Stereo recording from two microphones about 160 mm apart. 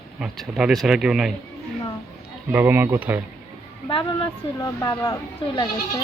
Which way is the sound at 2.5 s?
10° right (ahead or behind).